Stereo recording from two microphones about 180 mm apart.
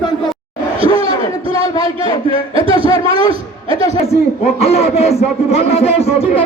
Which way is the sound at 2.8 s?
25° left (ahead or behind).